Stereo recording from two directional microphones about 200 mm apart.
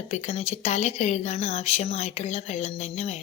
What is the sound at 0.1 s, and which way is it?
A woman's voice, 35° left (ahead or behind).